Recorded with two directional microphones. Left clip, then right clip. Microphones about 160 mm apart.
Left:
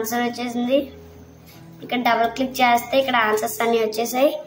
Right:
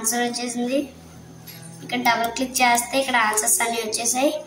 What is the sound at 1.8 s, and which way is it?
A woman's voice, 50° left (ahead or behind).